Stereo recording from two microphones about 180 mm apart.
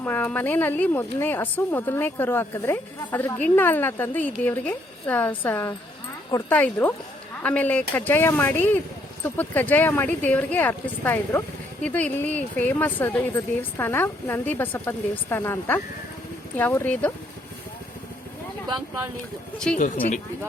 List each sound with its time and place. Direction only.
0.0 s speech: 10° left (ahead or behind)
18.7 s speech: 15° right (ahead or behind)
19.7 s speech: 5° left (ahead or behind)